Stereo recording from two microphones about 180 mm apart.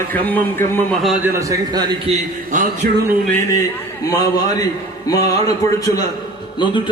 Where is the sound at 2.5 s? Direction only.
45° right (ahead or behind).